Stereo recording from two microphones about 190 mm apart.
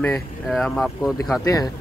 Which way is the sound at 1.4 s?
20° left (ahead or behind).